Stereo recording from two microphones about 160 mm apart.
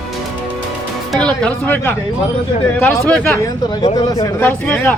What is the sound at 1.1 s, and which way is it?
Speech, 5° left (ahead or behind).